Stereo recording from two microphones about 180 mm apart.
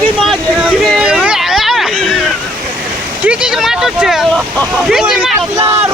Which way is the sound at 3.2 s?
5° right (ahead or behind).